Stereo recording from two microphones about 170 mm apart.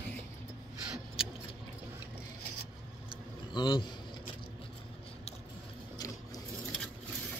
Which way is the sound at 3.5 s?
25° left (ahead or behind).